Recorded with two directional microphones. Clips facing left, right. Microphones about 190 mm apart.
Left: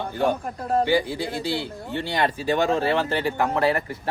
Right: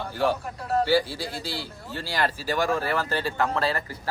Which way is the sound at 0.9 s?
15° left (ahead or behind).